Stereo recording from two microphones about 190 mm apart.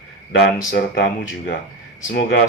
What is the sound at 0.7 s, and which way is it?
Speech, 65° left (ahead or behind).